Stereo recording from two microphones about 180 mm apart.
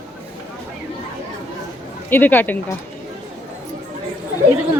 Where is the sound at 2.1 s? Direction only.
10° left (ahead or behind).